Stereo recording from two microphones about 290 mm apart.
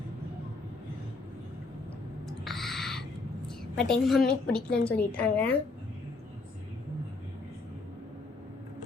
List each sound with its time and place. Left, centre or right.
2.4 s owl: centre
3.8 s a woman's voice: centre
4.5 s a woman's voice: left
5.1 s a woman's voice: centre